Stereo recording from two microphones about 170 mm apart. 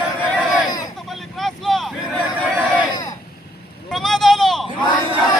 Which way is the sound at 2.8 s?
25° left (ahead or behind).